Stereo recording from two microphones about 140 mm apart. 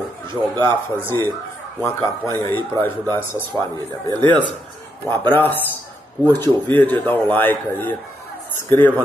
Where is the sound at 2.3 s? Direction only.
20° left (ahead or behind).